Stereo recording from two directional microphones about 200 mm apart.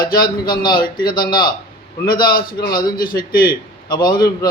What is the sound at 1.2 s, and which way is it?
A man's voice, 50° left (ahead or behind).